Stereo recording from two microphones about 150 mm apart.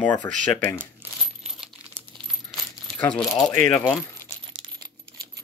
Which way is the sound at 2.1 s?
30° right (ahead or behind).